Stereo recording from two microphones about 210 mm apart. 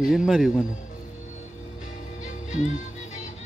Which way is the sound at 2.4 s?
35° left (ahead or behind).